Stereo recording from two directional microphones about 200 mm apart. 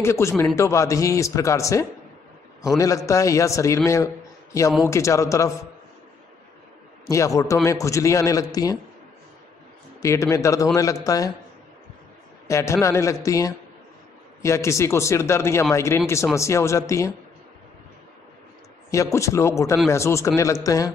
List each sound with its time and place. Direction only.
0.0 s a man's voice: 15° left (ahead or behind)
7.1 s a man's voice: 15° left (ahead or behind)
10.0 s a man's voice: 15° left (ahead or behind)
12.4 s a man's voice: 15° left (ahead or behind)
18.9 s a man's voice: 15° left (ahead or behind)